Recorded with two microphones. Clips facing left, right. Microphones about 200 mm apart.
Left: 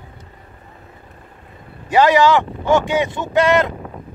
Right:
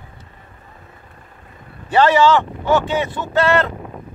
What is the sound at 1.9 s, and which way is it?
Speech, 10° left (ahead or behind).